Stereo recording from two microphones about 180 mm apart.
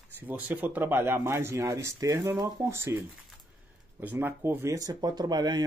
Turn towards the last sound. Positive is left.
turn(degrees=-25)  # may be behind; listen again after turning